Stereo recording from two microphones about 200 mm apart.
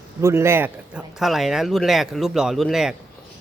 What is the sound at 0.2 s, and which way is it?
Speech, 15° right (ahead or behind).